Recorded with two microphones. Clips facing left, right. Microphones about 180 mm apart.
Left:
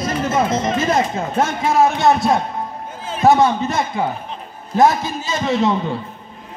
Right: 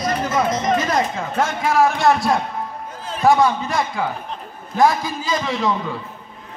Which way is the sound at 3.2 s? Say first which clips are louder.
Left 2 dB; 25° left (ahead or behind).